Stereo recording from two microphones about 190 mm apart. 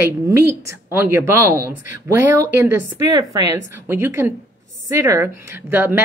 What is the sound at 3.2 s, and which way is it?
Speech, 20° right (ahead or behind).